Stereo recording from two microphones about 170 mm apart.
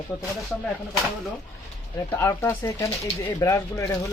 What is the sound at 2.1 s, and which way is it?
Speech, 20° left (ahead or behind).